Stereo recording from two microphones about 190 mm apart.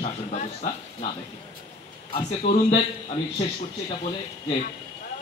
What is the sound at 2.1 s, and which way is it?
Speech, 35° left (ahead or behind).